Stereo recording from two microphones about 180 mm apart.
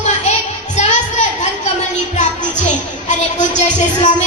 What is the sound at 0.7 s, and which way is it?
Children playing, 40° left (ahead or behind).